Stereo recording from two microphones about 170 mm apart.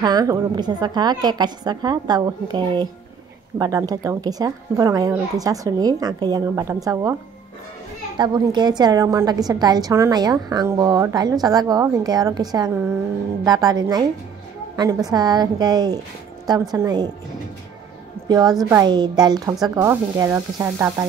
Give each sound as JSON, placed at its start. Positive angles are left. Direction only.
{"t": 0.0, "sound": "a woman's voice", "side_deg": -25}
{"t": 8.2, "sound": "a woman's voice", "side_deg": -25}
{"t": 15.0, "sound": "a woman's voice", "side_deg": -25}
{"t": 18.3, "sound": "a woman's voice", "side_deg": -20}